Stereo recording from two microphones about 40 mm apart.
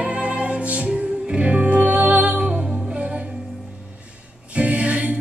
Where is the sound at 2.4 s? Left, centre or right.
Right.